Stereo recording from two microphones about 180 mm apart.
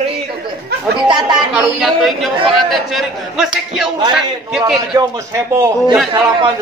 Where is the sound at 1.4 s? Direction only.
5° right (ahead or behind).